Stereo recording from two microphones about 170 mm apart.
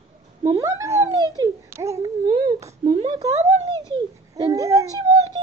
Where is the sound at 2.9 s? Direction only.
25° right (ahead or behind).